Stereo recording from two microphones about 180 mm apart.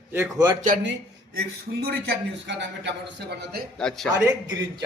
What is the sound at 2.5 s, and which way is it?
Speech, 80° right.